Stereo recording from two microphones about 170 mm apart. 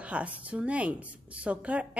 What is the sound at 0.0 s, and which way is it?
A woman's voice, 5° right (ahead or behind).